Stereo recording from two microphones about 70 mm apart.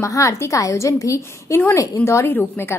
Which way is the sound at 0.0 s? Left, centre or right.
Left.